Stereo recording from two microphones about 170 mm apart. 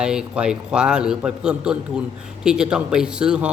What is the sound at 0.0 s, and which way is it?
Speech, 5° right (ahead or behind).